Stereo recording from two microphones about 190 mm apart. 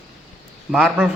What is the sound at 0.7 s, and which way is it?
Speech, 5° right (ahead or behind).